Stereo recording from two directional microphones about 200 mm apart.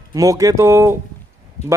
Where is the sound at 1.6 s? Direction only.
35° left (ahead or behind).